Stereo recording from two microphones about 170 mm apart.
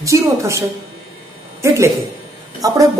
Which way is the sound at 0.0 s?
20° right (ahead or behind).